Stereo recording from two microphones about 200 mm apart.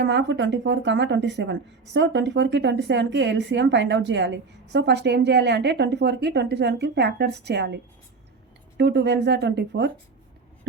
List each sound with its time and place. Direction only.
0.0 s speech: 60° right (ahead or behind)
8.8 s speech: 55° right (ahead or behind)